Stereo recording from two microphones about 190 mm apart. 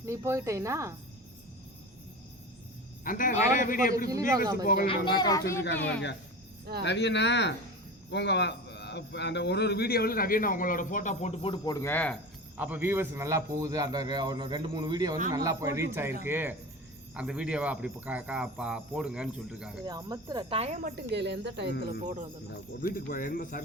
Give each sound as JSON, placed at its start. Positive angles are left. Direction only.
{"t": 0.0, "sound": "speech", "side_deg": -15}
{"t": 3.0, "sound": "a man's voice", "side_deg": 45}
{"t": 4.1, "sound": "a man's voice", "side_deg": -20}
{"t": 4.6, "sound": "a man's voice", "side_deg": 50}
{"t": 6.8, "sound": "a man's voice", "side_deg": 65}
{"t": 12.5, "sound": "a man's voice", "side_deg": -10}
{"t": 19.8, "sound": "a man's voice", "side_deg": -20}
{"t": 20.6, "sound": "speech", "side_deg": -40}
{"t": 20.9, "sound": "speech", "side_deg": -65}
{"t": 21.8, "sound": "speech", "side_deg": -40}
{"t": 22.8, "sound": "a man's voice", "side_deg": 50}